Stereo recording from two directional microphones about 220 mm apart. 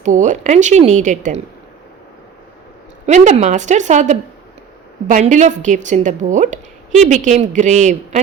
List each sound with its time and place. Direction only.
0.0 s a woman's voice: 35° right (ahead or behind)
3.1 s a woman's voice: 30° right (ahead or behind)